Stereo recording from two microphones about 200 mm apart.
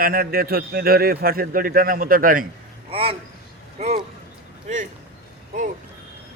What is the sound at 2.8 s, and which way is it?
Speech, 30° right (ahead or behind).